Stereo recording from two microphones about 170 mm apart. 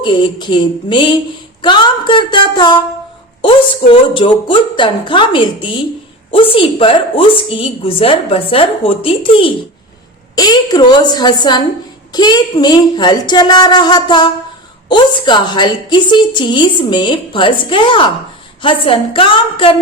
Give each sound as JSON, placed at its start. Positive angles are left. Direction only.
{"t": 0.0, "sound": "a woman's voice", "side_deg": 30}